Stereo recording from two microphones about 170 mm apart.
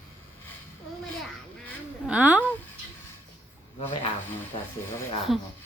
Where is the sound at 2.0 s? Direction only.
5° right (ahead or behind).